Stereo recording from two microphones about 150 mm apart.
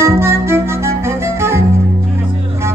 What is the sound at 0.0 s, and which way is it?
Music, 20° right (ahead or behind).